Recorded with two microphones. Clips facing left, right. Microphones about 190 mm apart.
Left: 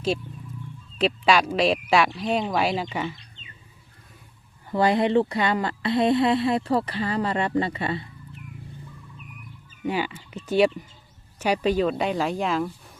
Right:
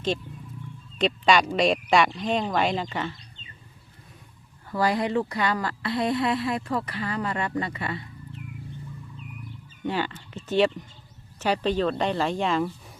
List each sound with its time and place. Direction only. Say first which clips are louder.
0.9 s speech: left 1 dB; 5° left (ahead or behind)
4.7 s speech: left 4 dB; 25° left (ahead or behind)
9.8 s speech: left 1 dB; 10° left (ahead or behind)